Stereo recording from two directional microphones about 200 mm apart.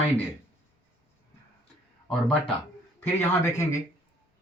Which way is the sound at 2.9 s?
15° left (ahead or behind).